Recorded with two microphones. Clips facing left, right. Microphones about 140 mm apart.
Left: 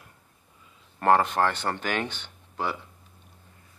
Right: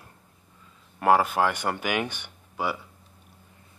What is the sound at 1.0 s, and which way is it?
Speech, 10° right (ahead or behind).